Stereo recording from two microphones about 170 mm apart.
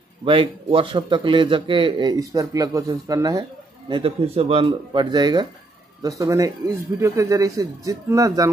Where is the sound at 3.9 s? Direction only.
35° right (ahead or behind).